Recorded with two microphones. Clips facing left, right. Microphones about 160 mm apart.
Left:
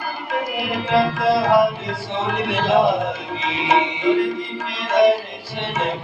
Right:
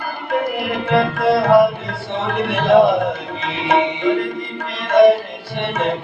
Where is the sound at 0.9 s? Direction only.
60° right (ahead or behind).